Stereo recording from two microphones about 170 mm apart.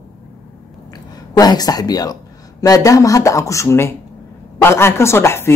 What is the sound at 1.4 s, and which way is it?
Speech, 25° left (ahead or behind).